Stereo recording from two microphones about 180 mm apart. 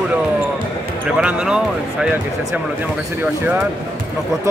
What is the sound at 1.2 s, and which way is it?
Speech, 5° right (ahead or behind).